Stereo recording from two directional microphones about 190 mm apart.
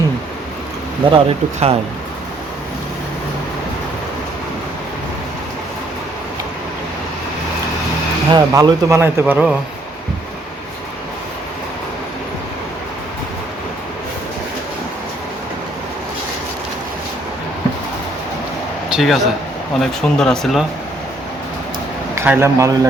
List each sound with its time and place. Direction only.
1.1 s speech: 30° right (ahead or behind)
8.3 s speech: 20° right (ahead or behind); by 9.6 s 5° right (ahead or behind)
18.9 s a man's voice: centre (ahead or behind)
22.1 s a man's voice: 15° right (ahead or behind)